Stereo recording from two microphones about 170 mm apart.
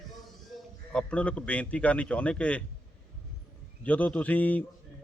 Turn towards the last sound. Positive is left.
turn(degrees=10)  # may be behind; listen again after turning